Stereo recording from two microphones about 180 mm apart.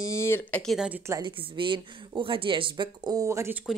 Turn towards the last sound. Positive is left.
turn(degrees=-15)  # may be behind; listen again after turning